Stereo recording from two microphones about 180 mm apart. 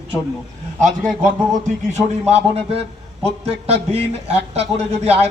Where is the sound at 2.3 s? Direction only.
35° right (ahead or behind).